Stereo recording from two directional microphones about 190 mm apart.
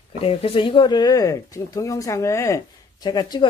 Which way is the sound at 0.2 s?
30° left (ahead or behind).